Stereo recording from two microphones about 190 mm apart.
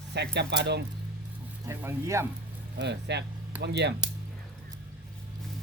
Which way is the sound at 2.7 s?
65° right (ahead or behind).